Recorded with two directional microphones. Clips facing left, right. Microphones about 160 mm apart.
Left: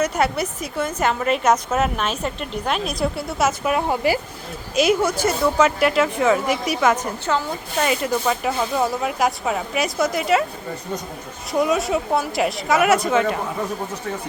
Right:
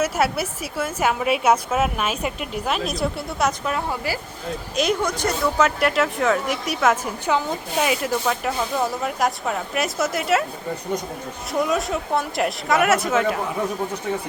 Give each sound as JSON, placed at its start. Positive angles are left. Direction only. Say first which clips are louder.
{"t": 0.0, "sound": "a woman's voice", "louder": "left 1 dB", "side_deg": -5}
{"t": 3.7, "sound": "speech", "louder": "left 6 dB", "side_deg": 20}
{"t": 4.7, "sound": "speech", "louder": "left 4 dB", "side_deg": 5}
{"t": 7.9, "sound": "speech", "louder": "left 3 dB", "side_deg": 0}
{"t": 11.5, "sound": "speech", "louder": "left 3 dB", "side_deg": 0}